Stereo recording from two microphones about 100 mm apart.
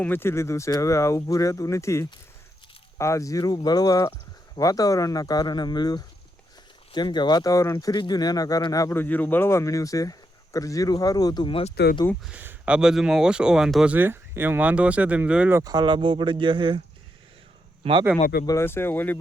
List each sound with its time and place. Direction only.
0.0 s speech: 20° left (ahead or behind)
9.0 s speech: 20° left (ahead or behind); by 11.5 s 45° left (ahead or behind)
12.2 s speech: 15° right (ahead or behind)
13.8 s speech: 20° right (ahead or behind)
15.6 s speech: 45° right (ahead or behind)
17.8 s a man's voice: 65° right (ahead or behind)
18.6 s speech: 25° left (ahead or behind)